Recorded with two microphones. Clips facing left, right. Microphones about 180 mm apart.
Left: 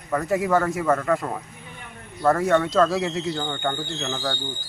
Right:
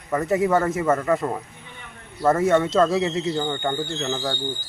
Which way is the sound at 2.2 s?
5° right (ahead or behind).